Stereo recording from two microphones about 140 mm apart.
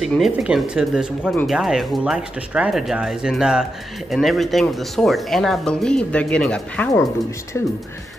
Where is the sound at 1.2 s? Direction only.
10° left (ahead or behind).